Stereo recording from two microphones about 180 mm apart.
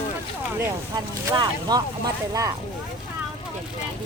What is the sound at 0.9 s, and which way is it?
Speech, 20° right (ahead or behind).